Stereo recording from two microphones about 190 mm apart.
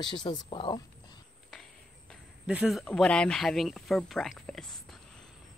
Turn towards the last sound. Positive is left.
turn(degrees=0)  # may be behind; listen again after turning